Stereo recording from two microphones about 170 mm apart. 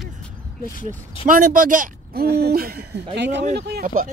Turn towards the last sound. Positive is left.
turn(degrees=-55)  # may be behind; listen again after turning